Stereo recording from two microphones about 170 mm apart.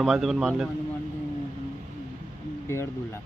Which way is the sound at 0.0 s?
Centre (ahead or behind).